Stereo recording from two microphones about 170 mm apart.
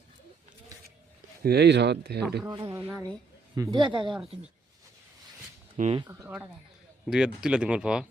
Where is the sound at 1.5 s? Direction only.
80° right.